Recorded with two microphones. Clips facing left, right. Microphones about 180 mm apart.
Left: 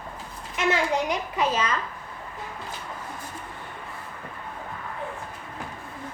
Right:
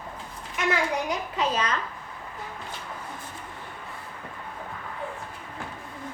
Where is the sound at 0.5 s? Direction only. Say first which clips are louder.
Left 2 dB; 25° left (ahead or behind).